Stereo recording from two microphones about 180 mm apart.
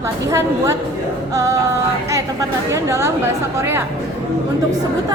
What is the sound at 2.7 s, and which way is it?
A woman's voice, 15° right (ahead or behind).